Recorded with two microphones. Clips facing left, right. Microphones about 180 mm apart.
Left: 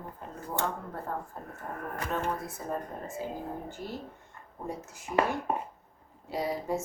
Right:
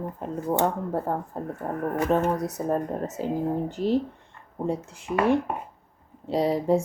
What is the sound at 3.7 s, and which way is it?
Speech, 70° right (ahead or behind).